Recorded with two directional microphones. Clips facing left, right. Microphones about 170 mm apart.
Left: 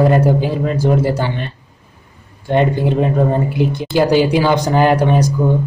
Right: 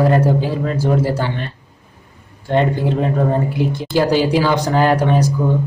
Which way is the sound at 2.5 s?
15° left (ahead or behind).